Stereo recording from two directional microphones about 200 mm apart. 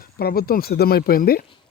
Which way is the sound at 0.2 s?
50° left (ahead or behind).